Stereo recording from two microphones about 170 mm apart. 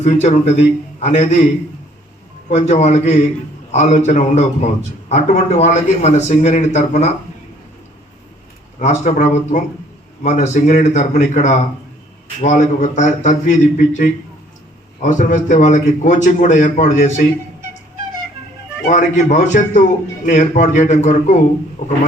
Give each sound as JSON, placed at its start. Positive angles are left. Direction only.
{"t": 0.0, "sound": "a man's voice", "side_deg": 45}
{"t": 2.5, "sound": "a man's voice", "side_deg": 45}
{"t": 8.8, "sound": "a man's voice", "side_deg": 50}
{"t": 18.9, "sound": "a man's voice", "side_deg": 45}